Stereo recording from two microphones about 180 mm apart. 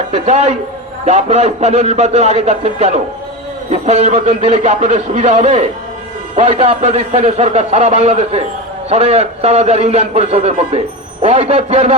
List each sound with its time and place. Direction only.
0.1 s a man's voice: 35° right (ahead or behind)